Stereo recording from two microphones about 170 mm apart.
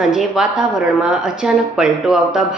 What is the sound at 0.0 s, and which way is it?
A woman's voice, 5° right (ahead or behind).